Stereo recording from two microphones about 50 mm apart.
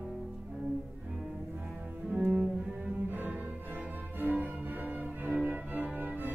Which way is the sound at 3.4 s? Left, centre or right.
Right.